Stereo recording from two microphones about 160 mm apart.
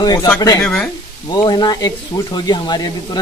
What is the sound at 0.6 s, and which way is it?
Speech, 5° left (ahead or behind).